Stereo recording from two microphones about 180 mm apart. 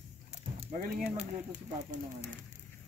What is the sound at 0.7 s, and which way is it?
Speech, 45° right (ahead or behind).